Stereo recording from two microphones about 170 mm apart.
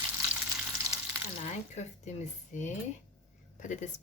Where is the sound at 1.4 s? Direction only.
40° left (ahead or behind).